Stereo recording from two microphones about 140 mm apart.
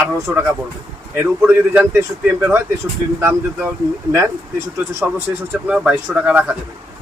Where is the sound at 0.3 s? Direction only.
10° right (ahead or behind).